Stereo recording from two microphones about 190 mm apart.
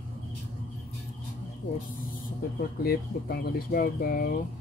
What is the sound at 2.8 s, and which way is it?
Speech, 55° left (ahead or behind).